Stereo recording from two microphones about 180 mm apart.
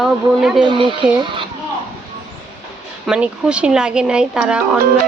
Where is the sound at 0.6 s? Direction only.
25° right (ahead or behind).